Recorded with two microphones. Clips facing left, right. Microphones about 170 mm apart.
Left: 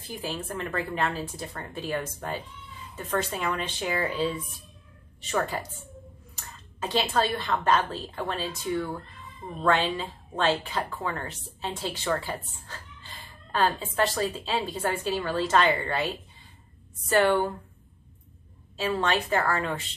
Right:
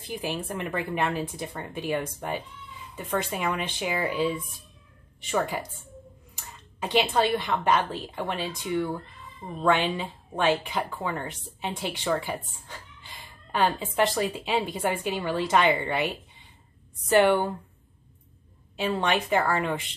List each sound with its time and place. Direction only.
0.2 s speech: 15° right (ahead or behind)
18.8 s speech: 15° right (ahead or behind)